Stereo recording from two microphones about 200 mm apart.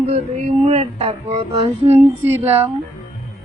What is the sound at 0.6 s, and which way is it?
Child singing, 30° right (ahead or behind).